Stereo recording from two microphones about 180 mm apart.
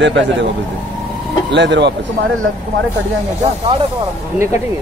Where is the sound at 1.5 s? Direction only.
80° right.